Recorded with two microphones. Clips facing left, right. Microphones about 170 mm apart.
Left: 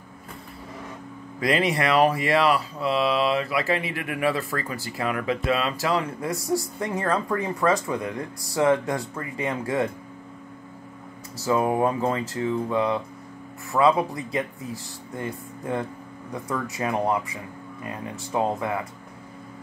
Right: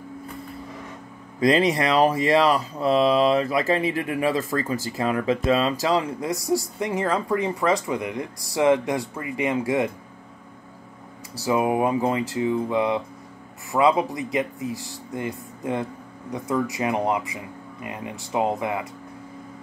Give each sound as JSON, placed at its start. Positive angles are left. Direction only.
{"t": 1.4, "sound": "speech", "side_deg": -35}
{"t": 6.2, "sound": "speech", "side_deg": -15}
{"t": 11.4, "sound": "speech", "side_deg": -15}